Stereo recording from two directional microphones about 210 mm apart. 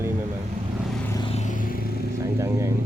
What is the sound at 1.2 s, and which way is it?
Vehicle, 30° left (ahead or behind).